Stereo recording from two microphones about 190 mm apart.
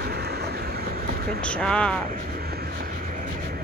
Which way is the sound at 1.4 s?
5° left (ahead or behind).